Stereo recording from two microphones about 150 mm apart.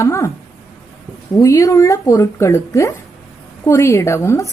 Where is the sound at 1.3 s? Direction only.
20° left (ahead or behind).